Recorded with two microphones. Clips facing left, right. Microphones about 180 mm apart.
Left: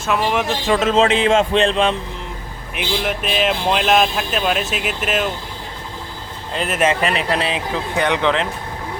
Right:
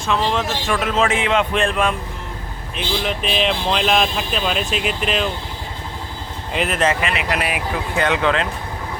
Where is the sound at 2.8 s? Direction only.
5° left (ahead or behind).